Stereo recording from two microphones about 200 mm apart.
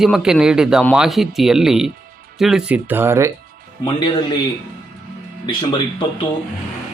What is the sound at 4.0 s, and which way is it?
Speech, 20° left (ahead or behind).